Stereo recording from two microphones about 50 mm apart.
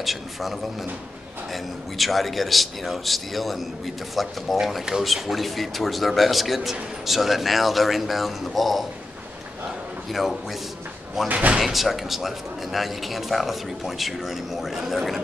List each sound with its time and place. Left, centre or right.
0.0 s a man's voice: centre
11.2 s speech: right
11.6 s a man's voice: centre